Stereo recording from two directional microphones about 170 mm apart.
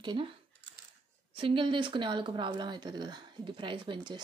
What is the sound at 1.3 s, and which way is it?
Speech, 30° right (ahead or behind).